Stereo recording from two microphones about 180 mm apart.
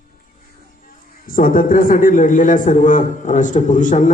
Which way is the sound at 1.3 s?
50° left (ahead or behind).